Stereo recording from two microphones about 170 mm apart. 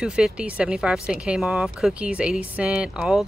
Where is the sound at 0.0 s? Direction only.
5° right (ahead or behind).